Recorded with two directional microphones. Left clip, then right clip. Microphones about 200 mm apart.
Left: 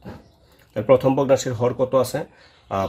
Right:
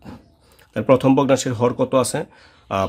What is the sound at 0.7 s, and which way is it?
Speech, 50° right (ahead or behind).